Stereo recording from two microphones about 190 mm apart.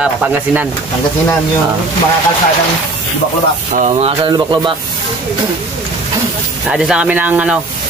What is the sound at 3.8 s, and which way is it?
Speech, 35° right (ahead or behind).